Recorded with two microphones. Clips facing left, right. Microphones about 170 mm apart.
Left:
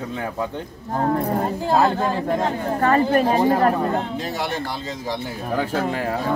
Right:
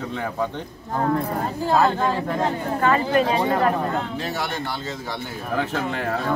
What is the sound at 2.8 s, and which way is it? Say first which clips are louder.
Speech: left 2 dB; 45° left (ahead or behind).